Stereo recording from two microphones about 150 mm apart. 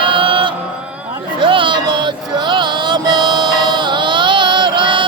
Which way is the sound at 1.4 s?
35° right (ahead or behind).